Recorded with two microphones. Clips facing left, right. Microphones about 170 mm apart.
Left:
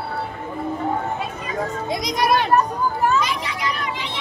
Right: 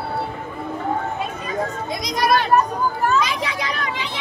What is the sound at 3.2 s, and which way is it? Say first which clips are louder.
Vehicle: right 1 dB; 90° right.